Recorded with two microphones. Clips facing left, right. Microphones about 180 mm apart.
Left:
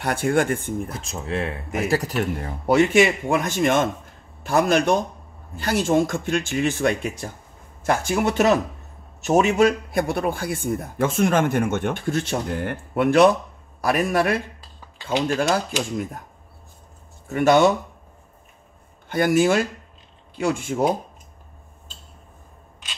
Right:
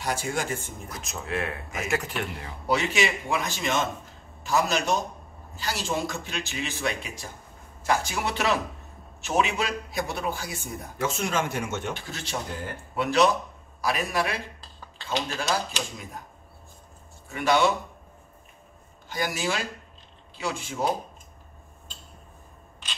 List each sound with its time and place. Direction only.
0.0 s a man's voice: 60° left (ahead or behind)
0.9 s a man's voice: 30° left (ahead or behind); by 15.6 s 55° left (ahead or behind)
17.3 s a man's voice: 50° left (ahead or behind)
19.0 s a man's voice: 55° left (ahead or behind)